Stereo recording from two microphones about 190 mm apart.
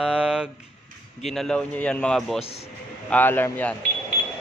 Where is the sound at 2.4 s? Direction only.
30° left (ahead or behind).